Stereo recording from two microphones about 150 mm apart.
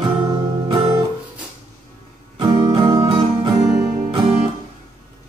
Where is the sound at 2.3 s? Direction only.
30° right (ahead or behind).